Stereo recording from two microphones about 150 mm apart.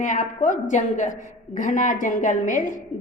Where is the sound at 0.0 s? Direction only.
60° left (ahead or behind).